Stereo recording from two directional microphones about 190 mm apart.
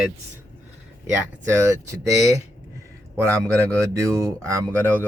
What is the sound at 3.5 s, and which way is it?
Speech, 15° right (ahead or behind).